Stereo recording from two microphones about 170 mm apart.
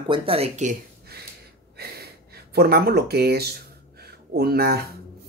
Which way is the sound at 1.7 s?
65° right (ahead or behind).